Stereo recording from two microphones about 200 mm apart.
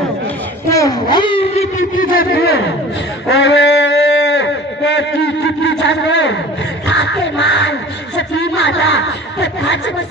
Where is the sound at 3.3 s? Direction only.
60° left (ahead or behind).